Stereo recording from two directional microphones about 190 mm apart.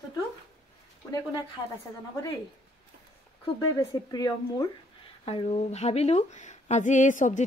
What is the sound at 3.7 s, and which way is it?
Speech, 20° left (ahead or behind).